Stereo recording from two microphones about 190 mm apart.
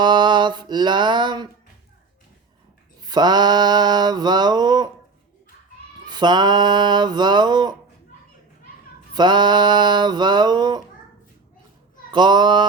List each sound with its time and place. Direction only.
0.0 s mantra: 25° right (ahead or behind)
3.0 s mantra: 20° right (ahead or behind)
6.1 s mantra: 25° right (ahead or behind)
9.1 s a sound: 25° right (ahead or behind)
12.1 s mantra: 25° right (ahead or behind)